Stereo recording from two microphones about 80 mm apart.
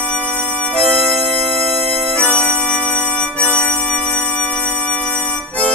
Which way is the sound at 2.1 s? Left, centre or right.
Centre.